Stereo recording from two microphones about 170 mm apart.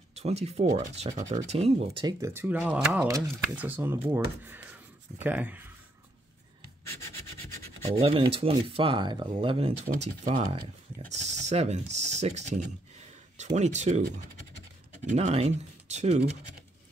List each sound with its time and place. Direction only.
0.1 s speech: 40° right (ahead or behind)
2.0 s speech: 15° right (ahead or behind)
7.8 s speech: 35° right (ahead or behind)
15.0 s speech: 40° right (ahead or behind)